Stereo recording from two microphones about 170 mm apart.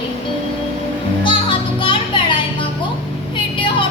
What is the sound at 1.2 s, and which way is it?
Music, 30° left (ahead or behind).